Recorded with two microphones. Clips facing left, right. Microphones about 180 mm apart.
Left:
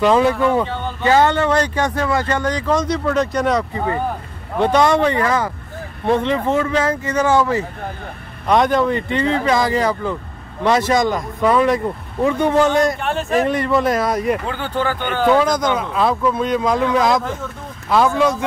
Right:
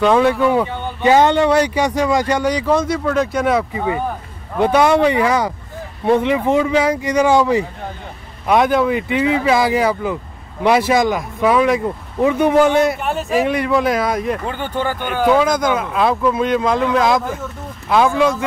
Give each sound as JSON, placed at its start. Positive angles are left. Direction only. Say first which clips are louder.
{"t": 0.0, "sound": "speech", "louder": "right 1 dB", "side_deg": 0}
{"t": 8.5, "sound": "speech", "louder": "right 1 dB", "side_deg": -5}